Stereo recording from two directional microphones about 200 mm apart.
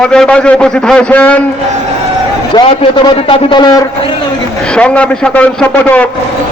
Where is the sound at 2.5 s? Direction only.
25° left (ahead or behind).